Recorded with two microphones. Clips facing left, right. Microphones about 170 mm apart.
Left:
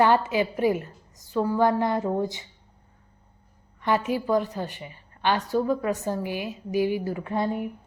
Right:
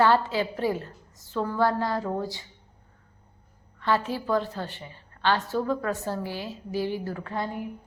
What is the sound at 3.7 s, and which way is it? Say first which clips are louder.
A woman's voice: left 2 dB; 15° left (ahead or behind).